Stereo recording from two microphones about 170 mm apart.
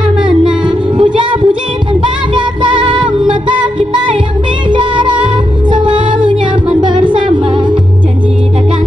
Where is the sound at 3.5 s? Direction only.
30° right (ahead or behind).